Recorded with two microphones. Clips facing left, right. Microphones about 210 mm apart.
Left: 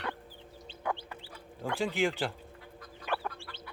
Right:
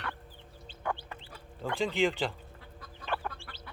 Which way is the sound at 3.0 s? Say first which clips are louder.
Left 1 dB; 10° left (ahead or behind).